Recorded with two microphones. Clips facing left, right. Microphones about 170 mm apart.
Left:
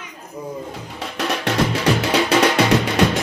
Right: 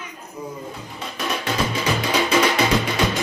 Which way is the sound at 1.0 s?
70° left (ahead or behind).